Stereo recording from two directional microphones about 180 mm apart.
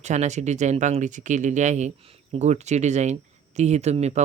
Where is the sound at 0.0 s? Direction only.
40° right (ahead or behind).